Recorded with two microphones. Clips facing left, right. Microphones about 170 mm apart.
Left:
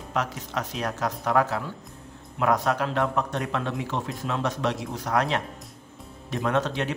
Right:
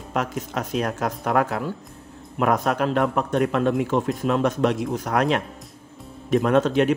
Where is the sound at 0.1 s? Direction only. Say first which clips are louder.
Right 3 dB; 50° right (ahead or behind).